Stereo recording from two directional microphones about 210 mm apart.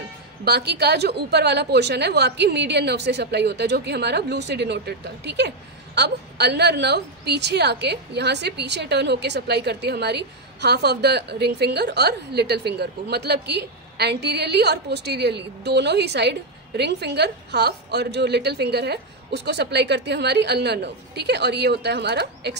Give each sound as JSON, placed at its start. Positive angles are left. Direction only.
{"t": 0.5, "sound": "a woman's voice", "side_deg": -50}